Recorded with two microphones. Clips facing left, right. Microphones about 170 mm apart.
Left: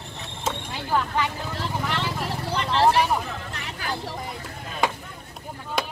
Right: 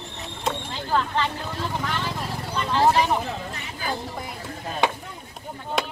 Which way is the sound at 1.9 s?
70° left (ahead or behind).